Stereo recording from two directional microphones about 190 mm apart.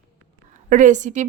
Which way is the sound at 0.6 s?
40° right (ahead or behind).